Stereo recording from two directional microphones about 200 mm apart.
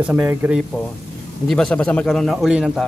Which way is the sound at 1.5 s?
5° left (ahead or behind).